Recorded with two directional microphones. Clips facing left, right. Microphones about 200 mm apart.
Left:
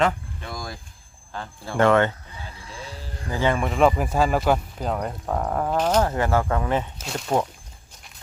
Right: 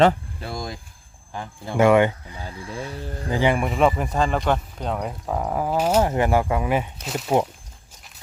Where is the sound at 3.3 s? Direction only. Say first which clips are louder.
Right 2 dB; 15° right (ahead or behind).